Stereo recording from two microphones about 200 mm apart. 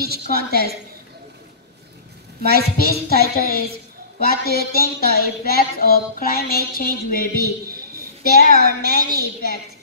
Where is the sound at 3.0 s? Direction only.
50° left (ahead or behind).